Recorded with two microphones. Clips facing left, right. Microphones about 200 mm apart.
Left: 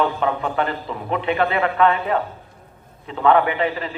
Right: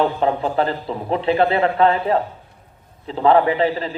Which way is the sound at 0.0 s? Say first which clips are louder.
Right 2 dB; 30° right (ahead or behind).